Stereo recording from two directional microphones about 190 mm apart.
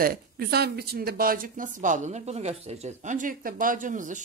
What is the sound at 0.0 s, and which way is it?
Speech, 55° right (ahead or behind).